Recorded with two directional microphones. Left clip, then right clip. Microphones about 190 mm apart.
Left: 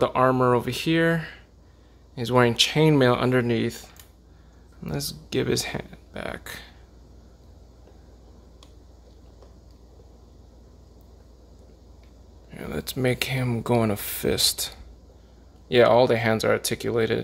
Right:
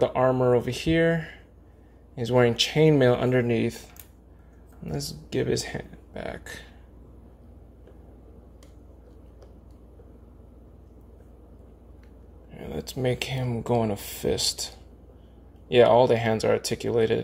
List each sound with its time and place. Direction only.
0.0 s speech: 15° left (ahead or behind)
4.8 s speech: 10° left (ahead or behind)
12.4 s speech: 15° left (ahead or behind)
15.7 s speech: 10° left (ahead or behind)